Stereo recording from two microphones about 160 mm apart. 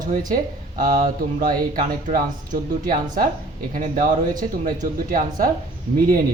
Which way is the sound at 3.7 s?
60° right (ahead or behind).